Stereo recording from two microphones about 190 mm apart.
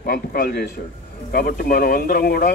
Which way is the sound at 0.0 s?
50° left (ahead or behind).